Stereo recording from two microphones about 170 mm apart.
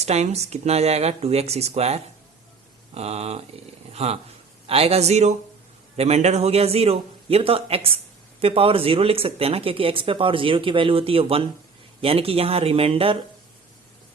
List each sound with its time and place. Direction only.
0.0 s speech: 40° right (ahead or behind)